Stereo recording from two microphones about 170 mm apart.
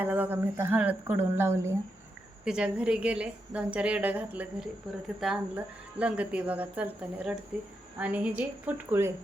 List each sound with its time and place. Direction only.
0.0 s speech: 10° right (ahead or behind)
2.4 s speech: 5° right (ahead or behind)